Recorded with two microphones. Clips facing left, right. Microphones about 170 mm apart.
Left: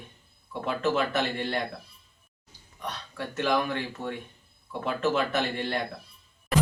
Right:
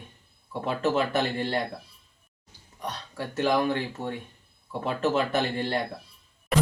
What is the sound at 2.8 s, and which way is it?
Speech, 30° right (ahead or behind).